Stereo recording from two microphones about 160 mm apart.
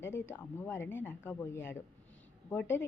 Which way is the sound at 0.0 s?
15° left (ahead or behind).